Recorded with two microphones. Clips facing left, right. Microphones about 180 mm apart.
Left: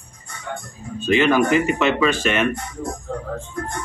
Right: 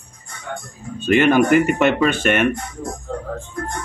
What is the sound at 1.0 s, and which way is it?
Speech, 55° right (ahead or behind).